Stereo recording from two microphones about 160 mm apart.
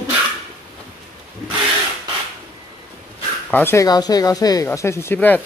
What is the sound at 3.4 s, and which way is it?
Speech, 10° left (ahead or behind).